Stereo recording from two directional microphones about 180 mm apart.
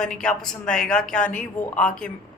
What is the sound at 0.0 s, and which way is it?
Speech, 5° left (ahead or behind).